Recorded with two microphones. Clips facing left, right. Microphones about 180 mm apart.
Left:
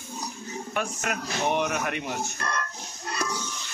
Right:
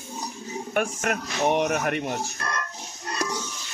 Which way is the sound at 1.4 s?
35° right (ahead or behind).